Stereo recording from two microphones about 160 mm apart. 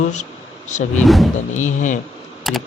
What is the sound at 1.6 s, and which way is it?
Speech, 50° left (ahead or behind).